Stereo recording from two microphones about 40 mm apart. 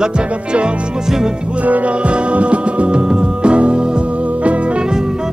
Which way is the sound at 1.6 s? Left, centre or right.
Right.